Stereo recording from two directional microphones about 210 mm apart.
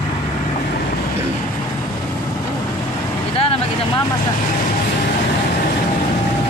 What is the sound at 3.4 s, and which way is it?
Vehicle, 25° left (ahead or behind).